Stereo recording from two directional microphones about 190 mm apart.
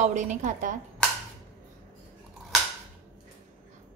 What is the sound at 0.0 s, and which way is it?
Speech, 40° right (ahead or behind).